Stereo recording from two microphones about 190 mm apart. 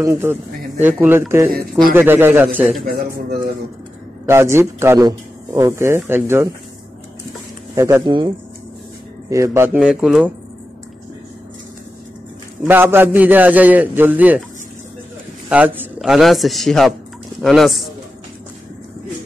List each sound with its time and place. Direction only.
0.0 s speech: 15° right (ahead or behind)
2.9 s a man's voice: 50° right (ahead or behind)
4.3 s speech: 15° right (ahead or behind)
7.7 s speech: 15° right (ahead or behind)
9.3 s speech: 15° right (ahead or behind)
12.6 s speech: 10° right (ahead or behind)
15.5 s a man's voice: 10° right (ahead or behind)